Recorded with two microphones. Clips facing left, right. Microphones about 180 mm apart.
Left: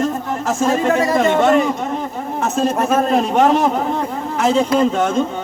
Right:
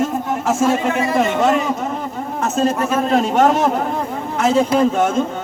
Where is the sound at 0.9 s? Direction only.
40° left (ahead or behind).